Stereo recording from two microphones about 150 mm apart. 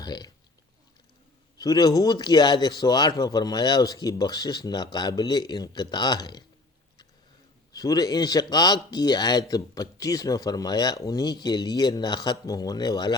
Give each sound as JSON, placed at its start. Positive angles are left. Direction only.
{"t": 0.0, "sound": "speech", "side_deg": 25}
{"t": 1.5, "sound": "a man's voice", "side_deg": 25}
{"t": 7.7, "sound": "a man's voice", "side_deg": 25}